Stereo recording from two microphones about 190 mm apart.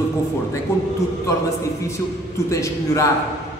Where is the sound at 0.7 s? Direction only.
15° left (ahead or behind).